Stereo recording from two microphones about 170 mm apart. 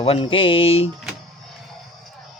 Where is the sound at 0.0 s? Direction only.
35° left (ahead or behind).